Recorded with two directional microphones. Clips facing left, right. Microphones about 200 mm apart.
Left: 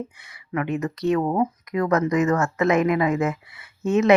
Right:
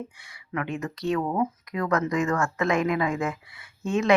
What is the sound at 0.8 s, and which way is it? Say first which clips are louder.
Speech: left 5 dB; 20° left (ahead or behind).